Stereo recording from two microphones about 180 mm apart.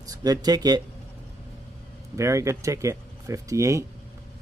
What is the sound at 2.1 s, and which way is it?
Speech, 15° right (ahead or behind).